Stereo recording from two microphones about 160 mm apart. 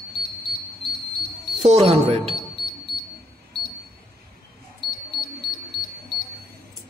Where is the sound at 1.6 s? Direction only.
40° right (ahead or behind).